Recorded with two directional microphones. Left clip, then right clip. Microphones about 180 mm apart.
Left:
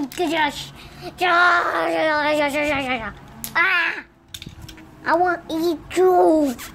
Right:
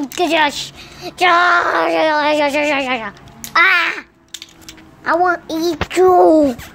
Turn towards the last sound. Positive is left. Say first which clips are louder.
# right 6 dB
turn(degrees=-15)  # may be behind; listen again after turning